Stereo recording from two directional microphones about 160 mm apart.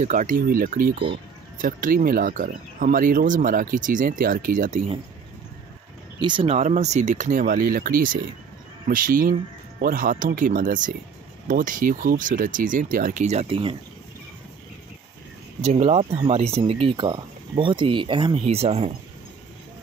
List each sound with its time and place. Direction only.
0.0 s speech: 55° right (ahead or behind)
6.1 s speech: 30° right (ahead or behind)
6.4 s speech: 45° right (ahead or behind)
15.6 s speech: 40° right (ahead or behind)